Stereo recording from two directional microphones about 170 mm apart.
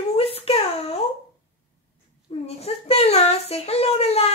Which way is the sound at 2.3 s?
35° left (ahead or behind).